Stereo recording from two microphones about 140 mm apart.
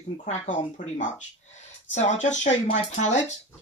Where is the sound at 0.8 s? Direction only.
70° left (ahead or behind).